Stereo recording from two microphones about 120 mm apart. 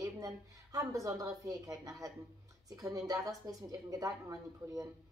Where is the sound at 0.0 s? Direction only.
30° right (ahead or behind).